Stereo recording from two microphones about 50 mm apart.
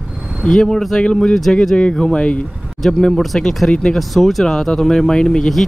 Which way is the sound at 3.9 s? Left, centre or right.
Centre.